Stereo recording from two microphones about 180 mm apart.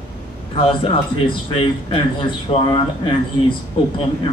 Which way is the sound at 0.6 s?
30° left (ahead or behind).